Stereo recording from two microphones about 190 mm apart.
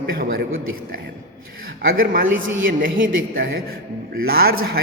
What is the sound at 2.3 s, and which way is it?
Speech, 90° right.